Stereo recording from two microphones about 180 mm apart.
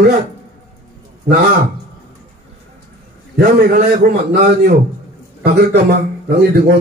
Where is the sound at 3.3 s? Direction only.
55° right (ahead or behind).